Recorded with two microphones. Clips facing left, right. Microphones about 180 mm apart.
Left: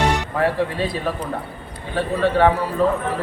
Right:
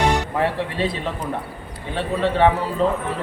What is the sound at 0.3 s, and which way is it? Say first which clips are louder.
Speech: left 2 dB; 25° right (ahead or behind).